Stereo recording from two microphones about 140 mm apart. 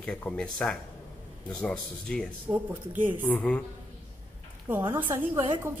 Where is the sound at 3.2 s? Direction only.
10° left (ahead or behind).